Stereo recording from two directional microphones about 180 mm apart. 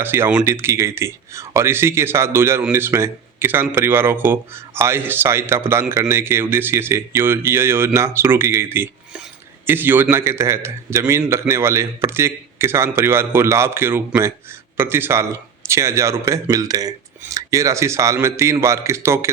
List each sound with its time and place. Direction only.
0.0 s speech: 10° right (ahead or behind)